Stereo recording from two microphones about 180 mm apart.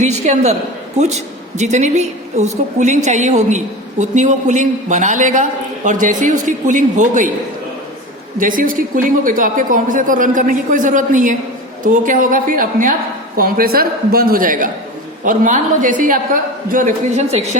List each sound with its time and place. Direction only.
0.0 s a woman's voice: 40° right (ahead or behind)
8.4 s a woman's voice: 50° right (ahead or behind)